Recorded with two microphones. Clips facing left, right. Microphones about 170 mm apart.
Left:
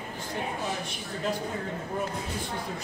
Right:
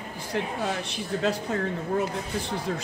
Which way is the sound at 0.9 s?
80° right.